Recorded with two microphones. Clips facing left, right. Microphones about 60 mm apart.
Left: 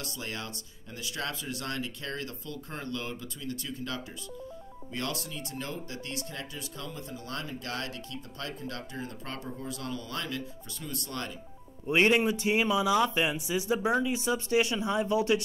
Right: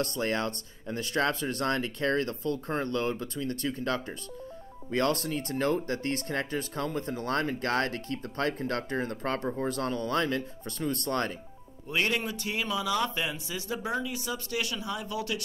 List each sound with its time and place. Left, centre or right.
0.0 s speech: right
11.9 s speech: left